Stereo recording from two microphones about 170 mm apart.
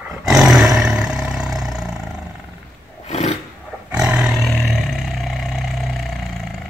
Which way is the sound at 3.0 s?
40° left (ahead or behind).